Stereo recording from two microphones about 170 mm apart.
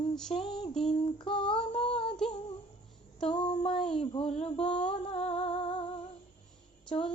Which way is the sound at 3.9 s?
35° left (ahead or behind).